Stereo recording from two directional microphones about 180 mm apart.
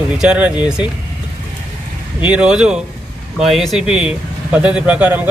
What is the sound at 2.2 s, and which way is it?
Speech, 5° right (ahead or behind).